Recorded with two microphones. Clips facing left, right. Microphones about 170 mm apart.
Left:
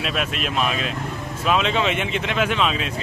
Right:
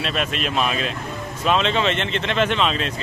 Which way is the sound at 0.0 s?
5° left (ahead or behind).